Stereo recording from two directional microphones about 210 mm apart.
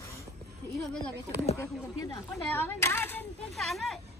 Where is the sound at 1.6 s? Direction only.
15° left (ahead or behind).